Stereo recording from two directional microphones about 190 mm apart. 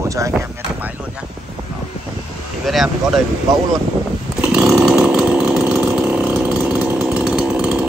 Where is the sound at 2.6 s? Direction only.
Centre (ahead or behind).